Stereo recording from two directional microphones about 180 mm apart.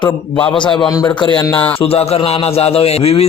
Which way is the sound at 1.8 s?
35° left (ahead or behind).